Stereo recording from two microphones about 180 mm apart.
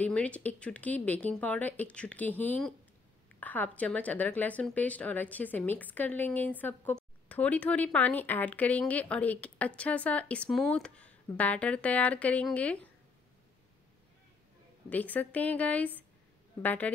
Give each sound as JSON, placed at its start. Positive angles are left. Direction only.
{"t": 0.0, "sound": "a woman's voice", "side_deg": 5}
{"t": 14.9, "sound": "a woman's voice", "side_deg": 10}